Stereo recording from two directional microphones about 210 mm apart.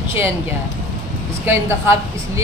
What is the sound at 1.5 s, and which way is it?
Speech, 10° right (ahead or behind).